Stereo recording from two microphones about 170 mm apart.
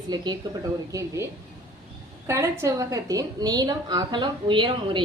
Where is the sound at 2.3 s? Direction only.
15° right (ahead or behind).